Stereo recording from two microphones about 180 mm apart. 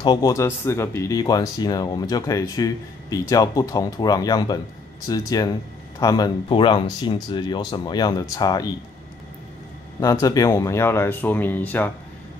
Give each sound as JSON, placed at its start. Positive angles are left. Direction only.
{"t": 0.0, "sound": "speech", "side_deg": 20}
{"t": 10.2, "sound": "speech", "side_deg": 20}